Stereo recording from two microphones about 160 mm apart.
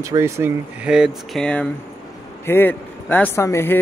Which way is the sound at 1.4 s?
10° left (ahead or behind).